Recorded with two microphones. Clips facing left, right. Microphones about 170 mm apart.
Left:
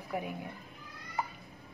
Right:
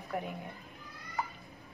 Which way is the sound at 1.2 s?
15° left (ahead or behind).